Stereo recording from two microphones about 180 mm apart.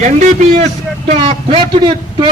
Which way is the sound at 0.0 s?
40° right (ahead or behind).